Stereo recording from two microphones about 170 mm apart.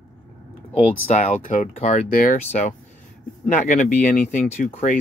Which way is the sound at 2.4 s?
45° left (ahead or behind).